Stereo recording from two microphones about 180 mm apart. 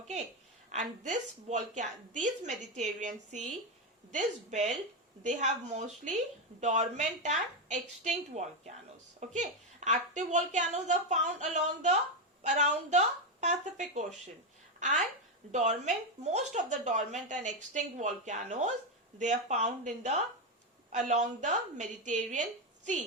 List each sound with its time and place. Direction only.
0.7 s a woman's voice: 40° right (ahead or behind)